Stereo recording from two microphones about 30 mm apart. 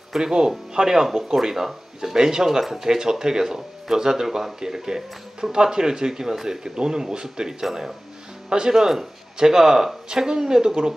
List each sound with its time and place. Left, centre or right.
0.2 s speech: right